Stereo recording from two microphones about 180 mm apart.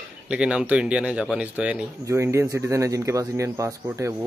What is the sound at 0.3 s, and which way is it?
Speech, 5° right (ahead or behind).